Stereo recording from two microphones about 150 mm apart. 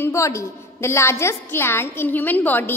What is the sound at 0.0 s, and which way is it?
A woman's voice, 20° left (ahead or behind).